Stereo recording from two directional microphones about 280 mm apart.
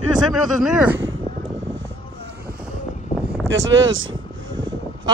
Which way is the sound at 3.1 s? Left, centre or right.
Left.